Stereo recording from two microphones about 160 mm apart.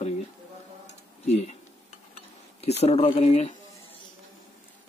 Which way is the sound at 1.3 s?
40° left (ahead or behind).